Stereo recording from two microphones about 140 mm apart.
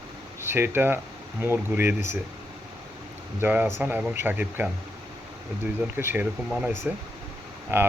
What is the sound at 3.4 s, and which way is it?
Speech, 15° right (ahead or behind).